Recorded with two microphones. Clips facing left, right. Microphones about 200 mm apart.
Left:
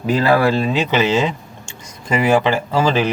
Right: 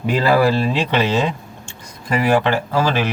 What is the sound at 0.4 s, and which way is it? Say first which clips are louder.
Speech: left 1 dB; centre (ahead or behind).